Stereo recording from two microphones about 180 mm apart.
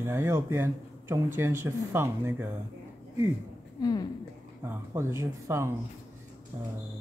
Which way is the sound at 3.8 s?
20° left (ahead or behind).